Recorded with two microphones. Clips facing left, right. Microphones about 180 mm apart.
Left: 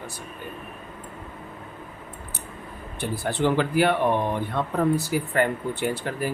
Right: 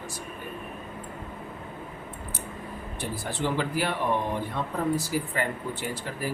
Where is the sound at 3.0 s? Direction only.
65° left (ahead or behind).